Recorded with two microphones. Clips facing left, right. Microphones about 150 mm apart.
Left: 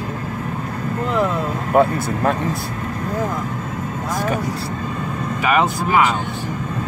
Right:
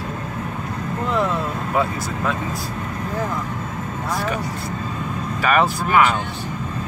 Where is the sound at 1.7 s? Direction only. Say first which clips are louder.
Left 8 dB; 50° left (ahead or behind).